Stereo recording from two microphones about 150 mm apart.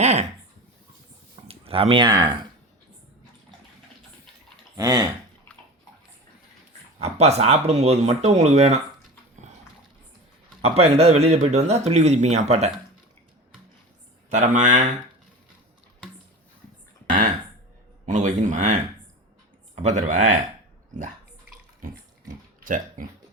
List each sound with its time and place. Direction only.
0.0 s a sound: 45° right (ahead or behind)
1.5 s speech: 40° right (ahead or behind)
4.8 s speech: 25° right (ahead or behind)
7.0 s speech: 45° right (ahead or behind)
10.6 s speech: 45° right (ahead or behind)
14.3 s speech: 55° right (ahead or behind)
18.0 s speech: 55° right (ahead or behind)
22.6 s speech: 65° right (ahead or behind)